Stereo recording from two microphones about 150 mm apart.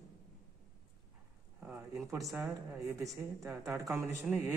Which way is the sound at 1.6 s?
15° right (ahead or behind).